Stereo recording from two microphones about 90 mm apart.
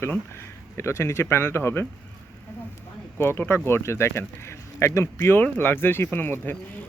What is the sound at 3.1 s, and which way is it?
Speech, 25° left (ahead or behind).